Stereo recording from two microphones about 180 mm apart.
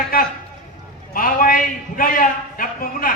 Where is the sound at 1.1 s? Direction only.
50° left (ahead or behind).